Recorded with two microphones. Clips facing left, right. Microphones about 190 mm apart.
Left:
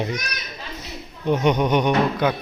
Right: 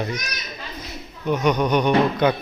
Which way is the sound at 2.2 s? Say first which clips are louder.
Right 2 dB; 5° left (ahead or behind).